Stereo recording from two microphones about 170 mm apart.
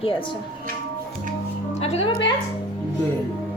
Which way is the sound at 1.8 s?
35° left (ahead or behind).